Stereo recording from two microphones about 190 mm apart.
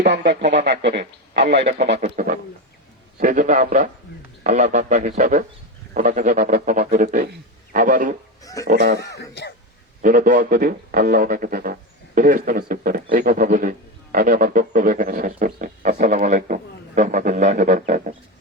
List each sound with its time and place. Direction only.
0.0 s a man's voice: 60° right (ahead or behind)
2.0 s speech: 45° right (ahead or behind)
9.0 s throat clearing: 60° left (ahead or behind)
10.0 s speech: 45° right (ahead or behind)